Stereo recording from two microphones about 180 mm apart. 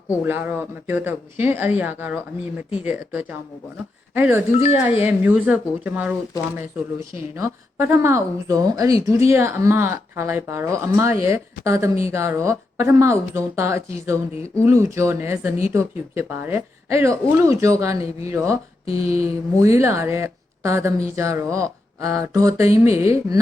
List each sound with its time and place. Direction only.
0.3 s speech: 10° right (ahead or behind)
7.3 s speech: 15° right (ahead or behind)
18.9 s mantra: 35° left (ahead or behind)
19.5 s speech: 15° right (ahead or behind)